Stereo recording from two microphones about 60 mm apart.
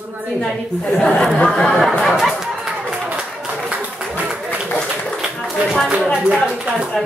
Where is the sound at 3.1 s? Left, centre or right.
Centre.